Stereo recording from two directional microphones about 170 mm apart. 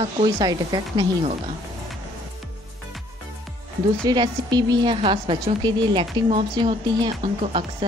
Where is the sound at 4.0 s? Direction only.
25° right (ahead or behind).